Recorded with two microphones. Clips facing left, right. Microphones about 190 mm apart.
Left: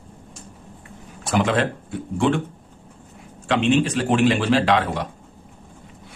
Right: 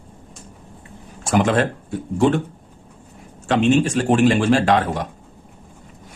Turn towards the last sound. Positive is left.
turn(degrees=-45)  # may be behind; listen again after turning